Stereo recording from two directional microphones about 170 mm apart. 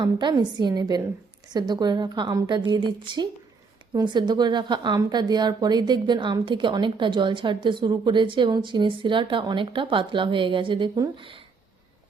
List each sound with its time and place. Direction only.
0.0 s a woman's voice: 25° right (ahead or behind)